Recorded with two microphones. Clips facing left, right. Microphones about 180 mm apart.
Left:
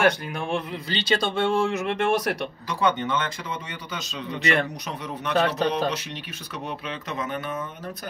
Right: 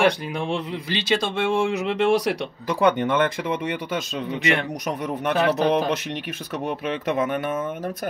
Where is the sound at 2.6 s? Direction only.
60° right (ahead or behind).